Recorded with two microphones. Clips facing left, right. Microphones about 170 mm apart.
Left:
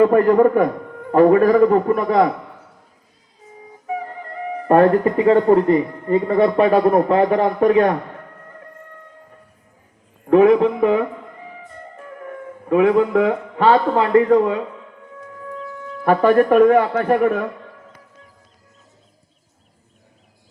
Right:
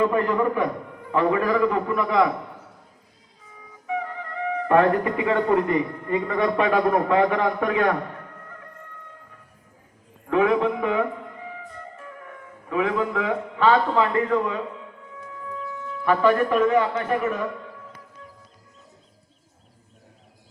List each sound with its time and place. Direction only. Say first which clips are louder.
0.0 s a man's voice: left 9 dB; 45° left (ahead or behind)
3.8 s speech: left 2 dB; 40° left (ahead or behind)
10.2 s speech: left 8 dB; 40° left (ahead or behind)
16.0 s a man's voice: left 6 dB; 50° left (ahead or behind)